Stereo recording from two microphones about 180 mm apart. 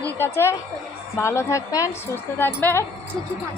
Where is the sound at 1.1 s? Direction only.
15° left (ahead or behind).